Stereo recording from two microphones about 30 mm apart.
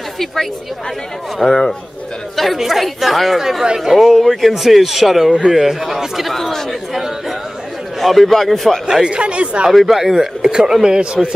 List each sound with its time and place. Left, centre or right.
1.4 s a man's voice: centre
2.3 s speech: centre
6.3 s chatter: centre
8.0 s a man's voice: centre
8.8 s speech: right
9.2 s speech: right
9.7 s speech: centre
10.4 s speech: right